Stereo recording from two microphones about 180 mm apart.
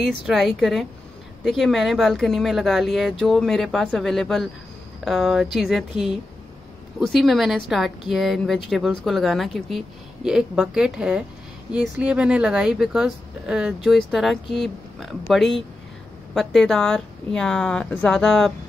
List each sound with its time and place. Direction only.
0.0 s a woman's voice: centre (ahead or behind)